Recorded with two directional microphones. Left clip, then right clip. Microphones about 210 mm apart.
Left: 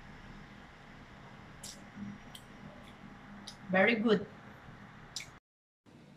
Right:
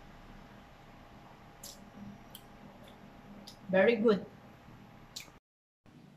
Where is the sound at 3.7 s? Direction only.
20° right (ahead or behind).